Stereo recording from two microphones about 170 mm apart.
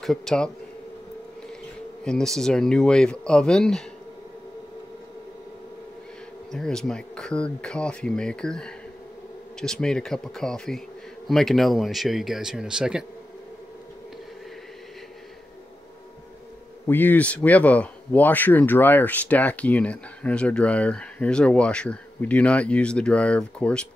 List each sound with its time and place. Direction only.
0.0 s speech: 5° left (ahead or behind)
2.0 s speech: 5° left (ahead or behind)
6.5 s speech: 5° left (ahead or behind)
16.8 s speech: 10° left (ahead or behind)